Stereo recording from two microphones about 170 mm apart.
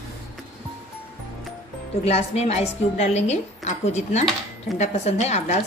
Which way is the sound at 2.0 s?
40° left (ahead or behind).